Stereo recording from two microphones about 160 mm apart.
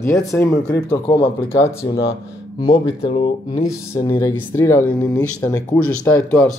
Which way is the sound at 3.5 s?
25° left (ahead or behind).